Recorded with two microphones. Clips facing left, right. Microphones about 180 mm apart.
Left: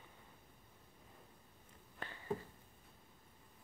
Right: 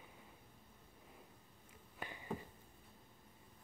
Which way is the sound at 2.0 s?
15° right (ahead or behind).